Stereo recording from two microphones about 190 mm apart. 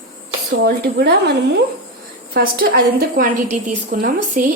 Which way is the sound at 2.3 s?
55° right (ahead or behind).